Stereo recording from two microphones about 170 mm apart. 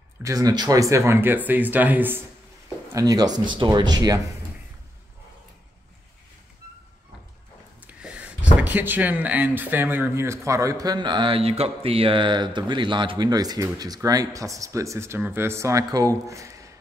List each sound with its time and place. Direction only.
0.2 s speech: 20° right (ahead or behind)
7.8 s speech: 10° right (ahead or behind)
16.3 s a sound: 20° right (ahead or behind)